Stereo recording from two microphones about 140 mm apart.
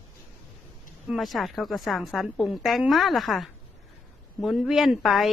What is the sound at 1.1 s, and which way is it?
A woman's voice, centre (ahead or behind).